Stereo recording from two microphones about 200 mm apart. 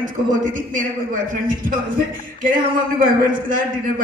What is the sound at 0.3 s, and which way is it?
A man's voice, 40° right (ahead or behind).